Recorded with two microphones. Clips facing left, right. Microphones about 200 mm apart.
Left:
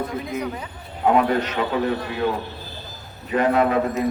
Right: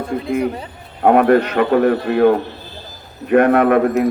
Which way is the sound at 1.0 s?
60° right (ahead or behind).